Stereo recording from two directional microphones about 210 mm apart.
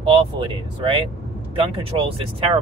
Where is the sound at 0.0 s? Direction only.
25° right (ahead or behind).